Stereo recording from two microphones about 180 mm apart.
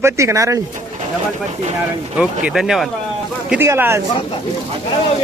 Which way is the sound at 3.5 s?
10° right (ahead or behind).